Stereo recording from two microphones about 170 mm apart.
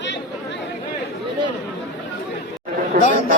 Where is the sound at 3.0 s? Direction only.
60° right (ahead or behind).